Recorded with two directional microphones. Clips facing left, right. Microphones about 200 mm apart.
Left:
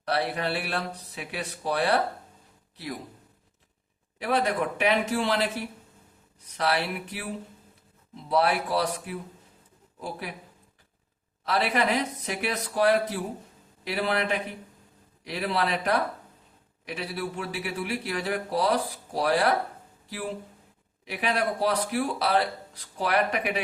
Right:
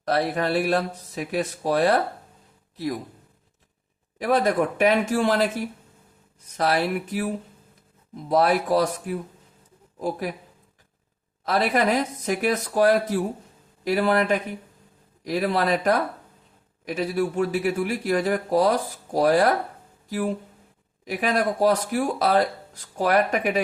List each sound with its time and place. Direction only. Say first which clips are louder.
0.0 s speech: right 5 dB; 45° right (ahead or behind)
4.2 s speech: right 5 dB; 45° right (ahead or behind)
11.4 s speech: right 4 dB; 45° right (ahead or behind)